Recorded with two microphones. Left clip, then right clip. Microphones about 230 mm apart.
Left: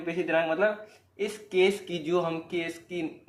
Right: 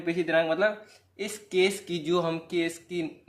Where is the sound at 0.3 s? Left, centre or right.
Right.